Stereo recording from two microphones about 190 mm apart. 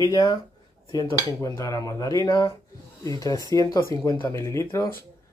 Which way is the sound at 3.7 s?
15° left (ahead or behind).